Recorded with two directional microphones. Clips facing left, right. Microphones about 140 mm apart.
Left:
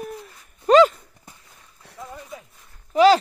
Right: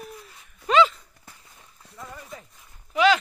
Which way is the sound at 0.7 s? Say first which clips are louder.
Left 6 dB; 45° left (ahead or behind).